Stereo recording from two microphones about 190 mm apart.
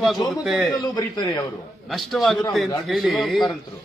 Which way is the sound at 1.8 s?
Centre (ahead or behind).